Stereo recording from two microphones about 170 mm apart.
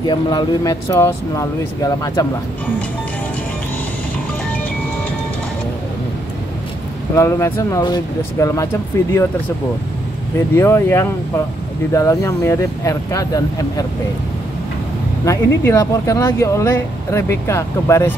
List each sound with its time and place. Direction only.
0.0 s speech: 25° left (ahead or behind)
7.2 s speech: 15° left (ahead or behind)
10.5 s speech: 15° left (ahead or behind)
15.2 s speech: 15° left (ahead or behind)